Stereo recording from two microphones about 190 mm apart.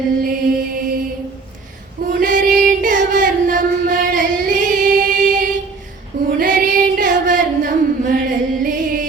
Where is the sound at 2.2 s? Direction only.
45° right (ahead or behind).